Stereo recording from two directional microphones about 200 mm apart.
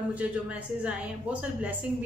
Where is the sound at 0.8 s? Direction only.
5° right (ahead or behind).